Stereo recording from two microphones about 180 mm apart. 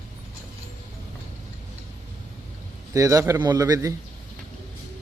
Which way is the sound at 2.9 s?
15° right (ahead or behind).